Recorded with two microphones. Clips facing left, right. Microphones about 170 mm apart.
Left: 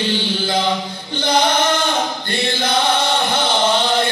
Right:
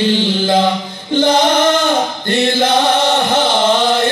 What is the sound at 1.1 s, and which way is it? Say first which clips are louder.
Chant: right 6 dB; 45° right (ahead or behind).